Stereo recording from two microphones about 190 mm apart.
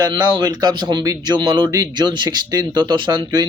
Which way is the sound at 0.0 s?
25° right (ahead or behind).